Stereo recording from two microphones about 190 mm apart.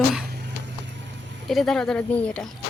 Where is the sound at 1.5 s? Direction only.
Centre (ahead or behind).